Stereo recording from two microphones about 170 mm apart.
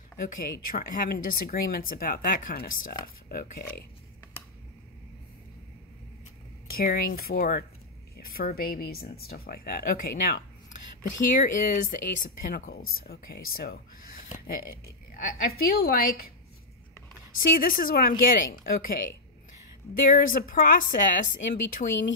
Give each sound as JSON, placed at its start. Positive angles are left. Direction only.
{"t": 0.4, "sound": "speech", "side_deg": 60}
{"t": 6.7, "sound": "speech", "side_deg": 60}
{"t": 17.4, "sound": "speech", "side_deg": 55}